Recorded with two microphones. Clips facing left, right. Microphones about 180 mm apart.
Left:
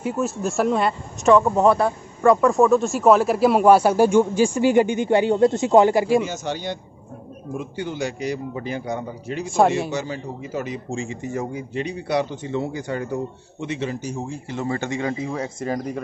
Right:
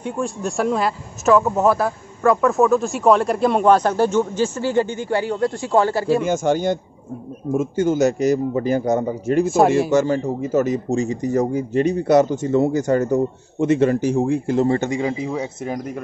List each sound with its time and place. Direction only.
0.0 s speech: 5° left (ahead or behind)
6.2 s a man's voice: 50° right (ahead or behind)
14.8 s speech: 15° right (ahead or behind)